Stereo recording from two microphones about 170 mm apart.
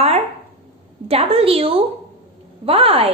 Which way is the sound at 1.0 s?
35° right (ahead or behind).